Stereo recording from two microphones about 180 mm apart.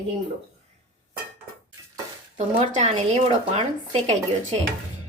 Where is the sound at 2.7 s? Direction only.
35° right (ahead or behind).